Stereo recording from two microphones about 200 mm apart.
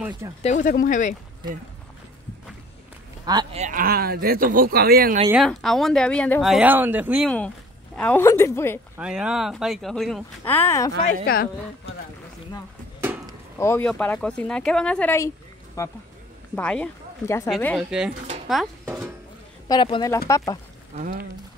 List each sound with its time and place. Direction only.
0.4 s speech: 35° left (ahead or behind)
3.5 s speech: 40° right (ahead or behind)
5.3 s speech: centre (ahead or behind)
7.2 s a woman's voice: 5° left (ahead or behind)
8.9 s speech: 5° right (ahead or behind); by 10.9 s 10° left (ahead or behind)
13.0 s chop: 10° right (ahead or behind)
13.6 s speech: 10° left (ahead or behind); by 19.1 s 10° right (ahead or behind)
19.7 s speech: 20° left (ahead or behind)